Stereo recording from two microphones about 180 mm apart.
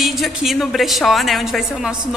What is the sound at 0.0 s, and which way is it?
A woman's voice, centre (ahead or behind).